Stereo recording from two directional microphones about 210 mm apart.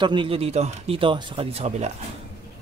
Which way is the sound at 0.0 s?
20° right (ahead or behind).